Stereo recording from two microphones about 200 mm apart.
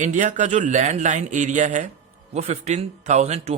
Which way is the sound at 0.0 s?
40° right (ahead or behind).